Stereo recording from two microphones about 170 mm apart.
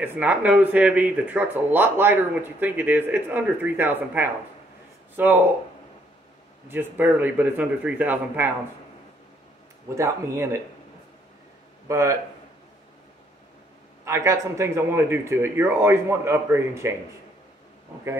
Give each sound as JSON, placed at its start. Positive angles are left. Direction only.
{"t": 0.0, "sound": "speech", "side_deg": -10}
{"t": 6.7, "sound": "speech", "side_deg": -10}
{"t": 9.9, "sound": "speech", "side_deg": -15}
{"t": 11.9, "sound": "speech", "side_deg": -15}
{"t": 14.0, "sound": "speech", "side_deg": -15}